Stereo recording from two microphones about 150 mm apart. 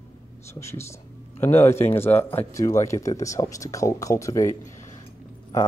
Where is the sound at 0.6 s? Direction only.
20° left (ahead or behind).